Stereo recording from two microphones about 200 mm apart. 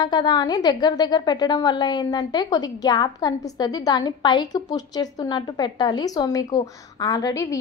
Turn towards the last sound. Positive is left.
turn(degrees=15)  # may be behind; listen again after turning